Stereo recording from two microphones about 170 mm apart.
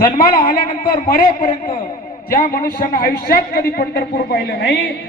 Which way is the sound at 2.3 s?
55° left (ahead or behind).